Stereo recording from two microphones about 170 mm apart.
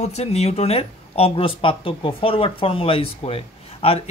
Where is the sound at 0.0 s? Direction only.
40° left (ahead or behind).